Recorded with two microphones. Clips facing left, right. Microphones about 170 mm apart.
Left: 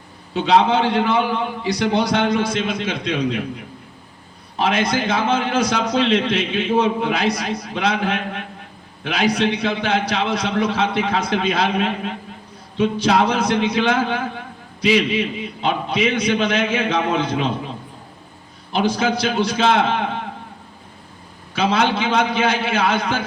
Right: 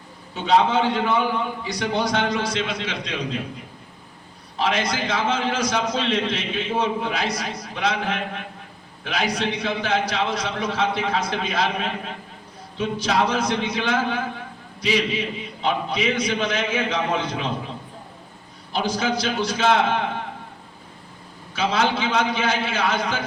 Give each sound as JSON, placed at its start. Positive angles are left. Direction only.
{"t": 0.3, "sound": "a man's voice", "side_deg": 70}
{"t": 4.5, "sound": "a man's voice", "side_deg": 55}
{"t": 18.7, "sound": "a man's voice", "side_deg": 60}
{"t": 21.5, "sound": "a man's voice", "side_deg": 60}